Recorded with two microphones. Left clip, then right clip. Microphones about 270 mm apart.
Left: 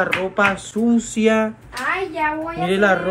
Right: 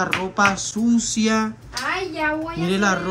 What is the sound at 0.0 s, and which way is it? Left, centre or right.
Speech, centre.